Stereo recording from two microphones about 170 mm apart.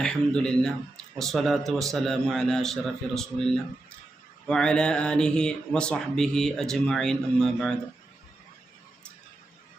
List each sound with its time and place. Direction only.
0.0 s speech: 5° left (ahead or behind)